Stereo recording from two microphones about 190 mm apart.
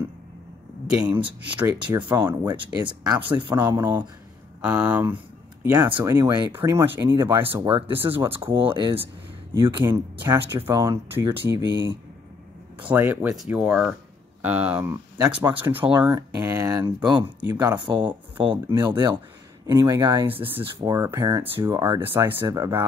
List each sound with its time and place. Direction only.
0.9 s speech: 5° right (ahead or behind)
2.8 s speech: 25° right (ahead or behind)
3.5 s speech: 15° right (ahead or behind)
5.6 s speech: 20° right (ahead or behind)
7.6 s speech: 30° right (ahead or behind)
7.9 s speech: 10° right (ahead or behind)
8.5 s speech: 25° right (ahead or behind)
8.9 s speech: 10° right (ahead or behind)
12.8 s speech: 10° right (ahead or behind)
16.0 s speech: 25° right (ahead or behind)